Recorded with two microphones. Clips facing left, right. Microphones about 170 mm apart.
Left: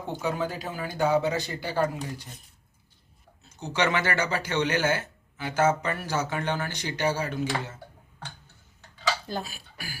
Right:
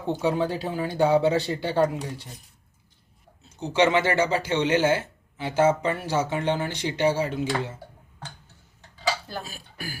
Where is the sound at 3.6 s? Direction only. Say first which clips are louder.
Right 5 dB; 30° right (ahead or behind).